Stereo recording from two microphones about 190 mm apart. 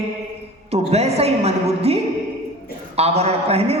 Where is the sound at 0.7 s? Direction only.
35° right (ahead or behind).